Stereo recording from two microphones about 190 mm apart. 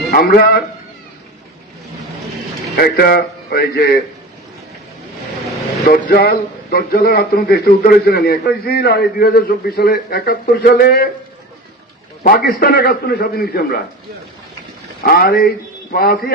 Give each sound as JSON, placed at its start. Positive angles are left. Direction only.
{"t": 0.1, "sound": "a man's voice", "side_deg": 55}
{"t": 2.7, "sound": "speech", "side_deg": 55}
{"t": 5.9, "sound": "a man's voice", "side_deg": 55}
{"t": 12.2, "sound": "a man's voice", "side_deg": 55}
{"t": 15.0, "sound": "a man's voice", "side_deg": 55}